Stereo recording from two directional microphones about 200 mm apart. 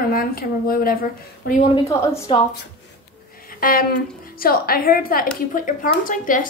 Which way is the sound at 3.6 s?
45° left (ahead or behind).